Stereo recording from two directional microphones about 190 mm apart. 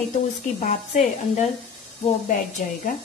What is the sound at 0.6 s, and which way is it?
A woman's voice, 40° left (ahead or behind).